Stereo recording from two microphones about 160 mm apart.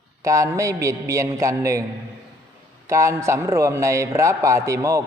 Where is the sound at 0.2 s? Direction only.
20° right (ahead or behind).